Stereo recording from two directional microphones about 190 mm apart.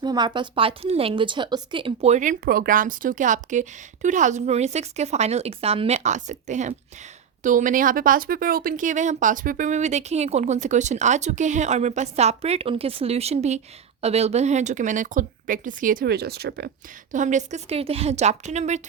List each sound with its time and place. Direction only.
0.0 s speech: 20° right (ahead or behind); by 18.8 s 40° right (ahead or behind)